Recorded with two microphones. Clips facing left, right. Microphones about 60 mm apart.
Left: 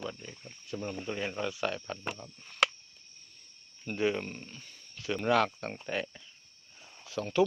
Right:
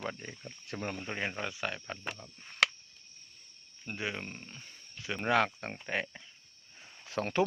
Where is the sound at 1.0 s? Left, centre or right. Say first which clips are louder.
Left 2 dB; right.